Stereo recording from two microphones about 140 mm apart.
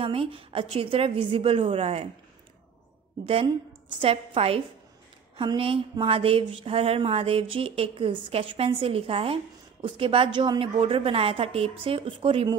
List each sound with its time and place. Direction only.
0.0 s a woman's voice: 40° right (ahead or behind)
4.0 s a woman's voice: 40° right (ahead or behind)